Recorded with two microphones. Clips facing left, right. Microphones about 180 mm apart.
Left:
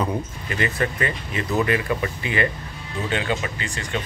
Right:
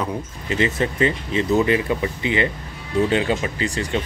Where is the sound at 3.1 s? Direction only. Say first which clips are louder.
Right 4 dB; 30° right (ahead or behind).